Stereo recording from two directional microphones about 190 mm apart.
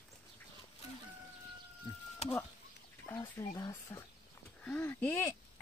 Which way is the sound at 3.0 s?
15° left (ahead or behind).